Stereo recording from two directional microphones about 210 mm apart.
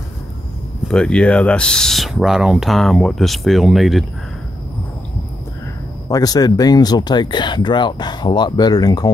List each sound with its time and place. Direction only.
0.8 s speech: 5° left (ahead or behind)
6.0 s speech: 20° left (ahead or behind)